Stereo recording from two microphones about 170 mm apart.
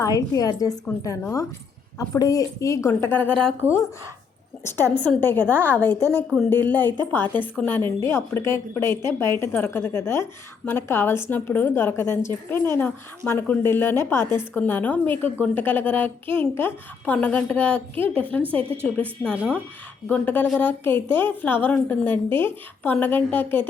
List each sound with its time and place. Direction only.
0.0 s a woman's voice: 20° left (ahead or behind)
4.6 s a woman's voice: 10° left (ahead or behind)